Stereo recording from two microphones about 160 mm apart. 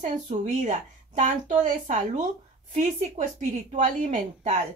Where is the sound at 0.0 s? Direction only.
50° right (ahead or behind).